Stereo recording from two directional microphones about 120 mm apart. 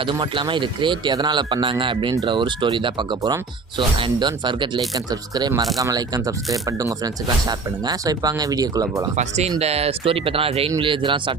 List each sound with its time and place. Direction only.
0.0 s speech: 40° right (ahead or behind)
9.1 s speech: 65° right (ahead or behind); by 11.3 s 45° right (ahead or behind)